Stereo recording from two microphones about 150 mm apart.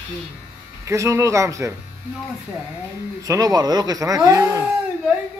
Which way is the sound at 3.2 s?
25° right (ahead or behind).